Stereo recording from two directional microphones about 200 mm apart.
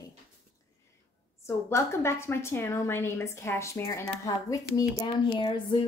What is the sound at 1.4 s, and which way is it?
A woman's voice, 15° left (ahead or behind).